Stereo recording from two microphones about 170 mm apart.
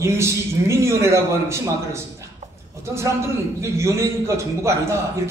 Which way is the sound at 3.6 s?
15° right (ahead or behind).